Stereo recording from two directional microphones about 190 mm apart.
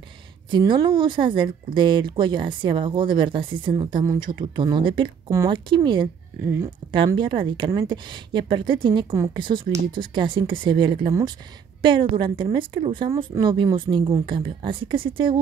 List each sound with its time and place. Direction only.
0.5 s speech: 25° right (ahead or behind)
7.1 s speech: 25° right (ahead or behind)